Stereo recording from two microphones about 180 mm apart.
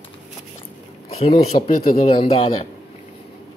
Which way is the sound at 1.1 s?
35° left (ahead or behind).